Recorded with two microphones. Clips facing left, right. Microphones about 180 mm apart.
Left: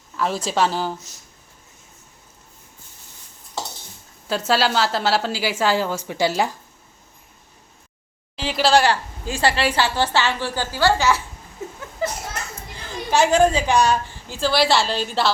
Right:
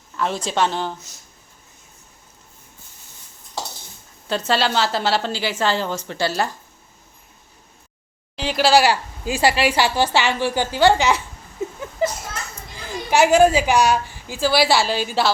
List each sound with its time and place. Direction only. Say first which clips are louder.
0.2 s speech: even; 5° left (ahead or behind)
4.3 s a woman's voice: even; 5° left (ahead or behind)
8.4 s a woman's voice: right 1 dB; centre (ahead or behind); by 11.2 s 20° right (ahead or behind)
11.6 s a sound: right 6 dB; 20° right (ahead or behind)
12.0 s children playing: right 4 dB; 20° right (ahead or behind)
12.9 s a woman's voice: right 2 dB; 10° right (ahead or behind)